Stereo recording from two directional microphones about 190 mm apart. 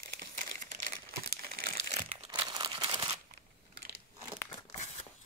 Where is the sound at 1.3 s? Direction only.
50° right (ahead or behind).